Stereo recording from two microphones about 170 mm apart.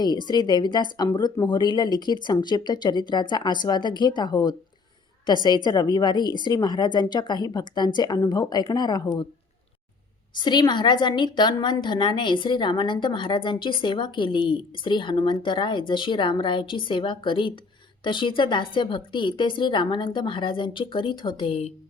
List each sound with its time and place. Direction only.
0.0 s a woman's voice: 25° left (ahead or behind)
10.3 s a woman's voice: 25° left (ahead or behind)